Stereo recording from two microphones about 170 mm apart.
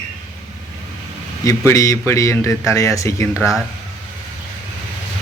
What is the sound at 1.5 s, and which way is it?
A man's voice, 20° left (ahead or behind).